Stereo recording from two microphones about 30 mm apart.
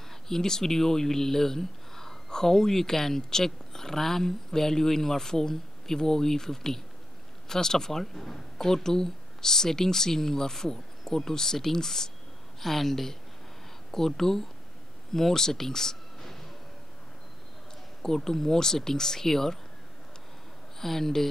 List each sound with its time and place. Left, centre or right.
0.1 s speech: centre
12.5 s speech: centre
18.0 s speech: centre
20.8 s speech: centre